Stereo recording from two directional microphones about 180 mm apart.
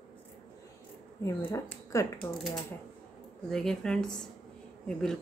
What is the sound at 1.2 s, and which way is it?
Speech, 15° left (ahead or behind).